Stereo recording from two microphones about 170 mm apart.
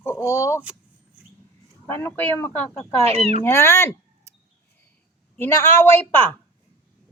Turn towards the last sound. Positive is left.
turn(degrees=10)  # may be behind; listen again after turning